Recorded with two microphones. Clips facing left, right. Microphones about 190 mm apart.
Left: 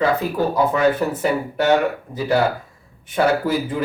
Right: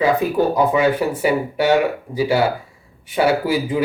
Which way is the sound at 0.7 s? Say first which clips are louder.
Right 1 dB; 10° right (ahead or behind).